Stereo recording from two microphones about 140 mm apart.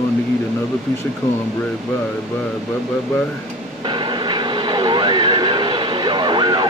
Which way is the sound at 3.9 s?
35° right (ahead or behind).